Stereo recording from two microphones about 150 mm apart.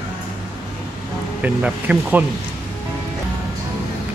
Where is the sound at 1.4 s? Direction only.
10° right (ahead or behind).